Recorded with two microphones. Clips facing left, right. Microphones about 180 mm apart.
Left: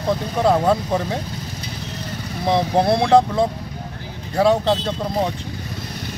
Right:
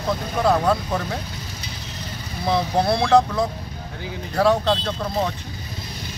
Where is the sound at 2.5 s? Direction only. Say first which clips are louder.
Left 3 dB; 20° left (ahead or behind).